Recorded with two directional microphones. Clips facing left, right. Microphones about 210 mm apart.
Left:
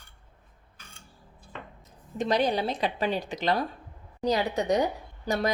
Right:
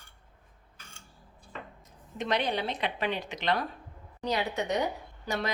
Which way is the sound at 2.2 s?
35° left (ahead or behind).